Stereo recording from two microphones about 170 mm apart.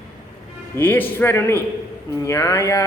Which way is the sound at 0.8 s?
10° left (ahead or behind).